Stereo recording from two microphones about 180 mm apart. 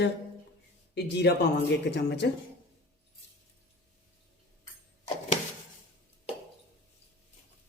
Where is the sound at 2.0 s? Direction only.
70° left (ahead or behind).